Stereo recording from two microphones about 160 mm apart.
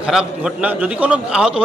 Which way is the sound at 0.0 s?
5° right (ahead or behind).